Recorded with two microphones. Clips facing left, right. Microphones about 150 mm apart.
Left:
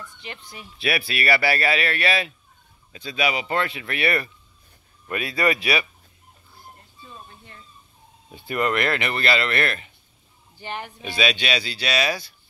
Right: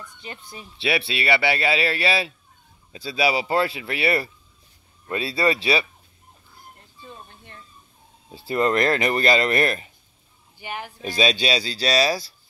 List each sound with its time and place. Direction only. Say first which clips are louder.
0.5 s speech: right 1 dB; 25° right (ahead or behind)
8.3 s speech: right 3 dB; 30° right (ahead or behind)
10.6 s speech: even; 10° right (ahead or behind)
11.0 s speech: right 3 dB; 35° right (ahead or behind)